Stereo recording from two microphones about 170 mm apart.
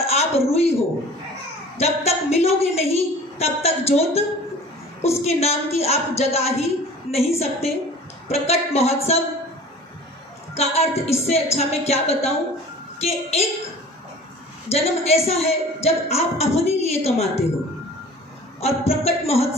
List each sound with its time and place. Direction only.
0.0 s a sound: 35° left (ahead or behind)
0.5 s a woman's voice: 35° left (ahead or behind)
1.8 s a woman's voice: 40° left (ahead or behind)
10.5 s a woman's voice: 40° left (ahead or behind)
14.7 s a woman's voice: 40° left (ahead or behind)
18.6 s a woman's voice: 35° left (ahead or behind)